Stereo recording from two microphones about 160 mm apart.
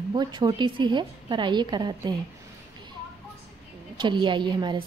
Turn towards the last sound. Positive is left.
turn(degrees=-30)  # may be behind; listen again after turning